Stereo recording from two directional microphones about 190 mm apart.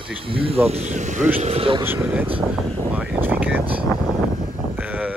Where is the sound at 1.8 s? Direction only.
10° right (ahead or behind).